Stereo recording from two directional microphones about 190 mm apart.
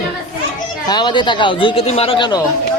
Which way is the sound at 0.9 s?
25° left (ahead or behind).